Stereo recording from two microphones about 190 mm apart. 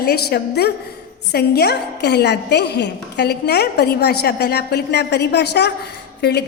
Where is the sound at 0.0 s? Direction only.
60° left (ahead or behind).